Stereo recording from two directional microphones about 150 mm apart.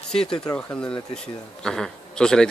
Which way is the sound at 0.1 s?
5° left (ahead or behind).